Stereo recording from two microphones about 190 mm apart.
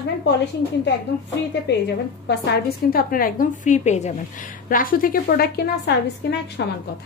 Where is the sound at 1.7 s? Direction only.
65° left (ahead or behind).